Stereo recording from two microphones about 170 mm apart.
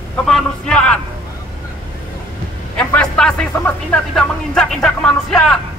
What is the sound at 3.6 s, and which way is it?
Speech, 5° left (ahead or behind).